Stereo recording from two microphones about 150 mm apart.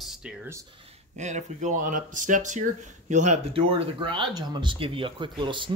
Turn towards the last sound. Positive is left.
turn(degrees=-30)  # may be behind; listen again after turning